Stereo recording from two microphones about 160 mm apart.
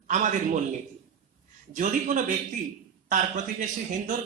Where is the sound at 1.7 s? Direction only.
50° right (ahead or behind).